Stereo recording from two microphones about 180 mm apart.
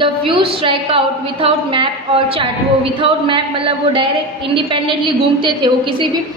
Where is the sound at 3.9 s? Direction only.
30° right (ahead or behind).